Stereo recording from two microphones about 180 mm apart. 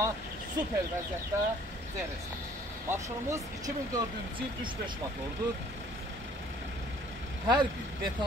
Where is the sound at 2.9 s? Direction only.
15° right (ahead or behind).